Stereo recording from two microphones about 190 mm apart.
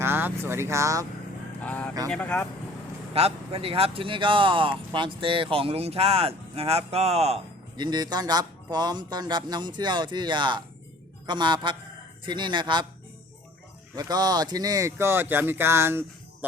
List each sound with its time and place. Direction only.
0.0 s speech: 10° right (ahead or behind)
1.6 s speech: 10° left (ahead or behind)
3.1 s speech: 30° right (ahead or behind)
13.9 s speech: 20° right (ahead or behind)